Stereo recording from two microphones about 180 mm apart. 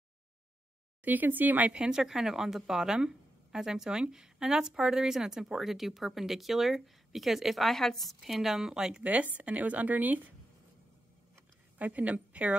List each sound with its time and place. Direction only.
1.0 s a woman's voice: 10° right (ahead or behind)
11.8 s a woman's voice: 10° right (ahead or behind)